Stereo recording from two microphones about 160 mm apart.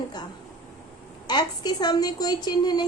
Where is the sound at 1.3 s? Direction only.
25° left (ahead or behind).